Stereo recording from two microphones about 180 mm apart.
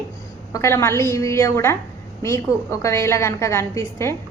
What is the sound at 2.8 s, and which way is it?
A woman's voice, 15° left (ahead or behind).